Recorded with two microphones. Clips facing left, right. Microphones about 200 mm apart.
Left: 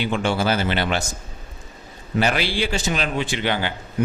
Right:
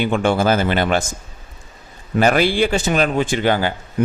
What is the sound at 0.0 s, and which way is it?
A man's voice, 50° right (ahead or behind).